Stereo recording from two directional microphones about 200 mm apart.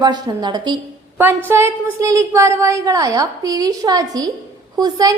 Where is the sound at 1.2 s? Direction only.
10° right (ahead or behind).